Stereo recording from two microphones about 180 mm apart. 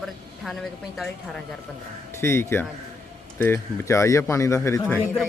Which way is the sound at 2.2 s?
15° left (ahead or behind).